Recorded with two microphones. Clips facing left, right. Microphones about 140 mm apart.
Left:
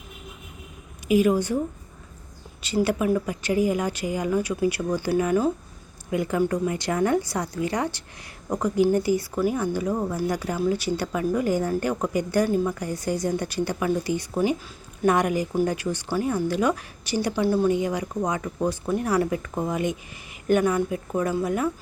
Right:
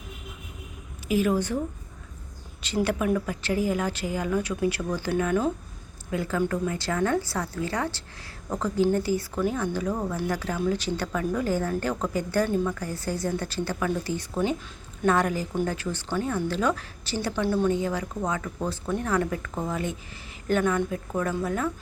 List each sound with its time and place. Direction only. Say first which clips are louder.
1.0 s speech: left 4 dB; 15° left (ahead or behind)
2.6 s speech: left 3 dB; 10° left (ahead or behind)